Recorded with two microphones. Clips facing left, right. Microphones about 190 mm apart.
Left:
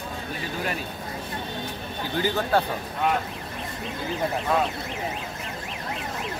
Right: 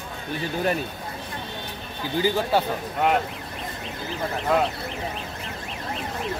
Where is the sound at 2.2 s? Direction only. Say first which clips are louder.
Right 2 dB; 10° right (ahead or behind).